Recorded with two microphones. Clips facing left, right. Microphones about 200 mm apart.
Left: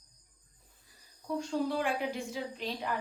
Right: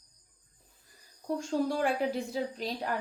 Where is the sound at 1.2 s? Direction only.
45° right (ahead or behind).